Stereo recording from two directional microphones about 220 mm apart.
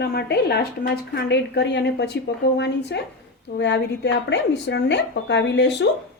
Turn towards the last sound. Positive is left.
turn(degrees=55)  # may be behind; listen again after turning